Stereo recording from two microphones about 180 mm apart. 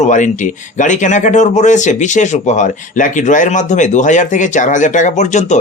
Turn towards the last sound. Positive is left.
turn(degrees=40)  # may be behind; listen again after turning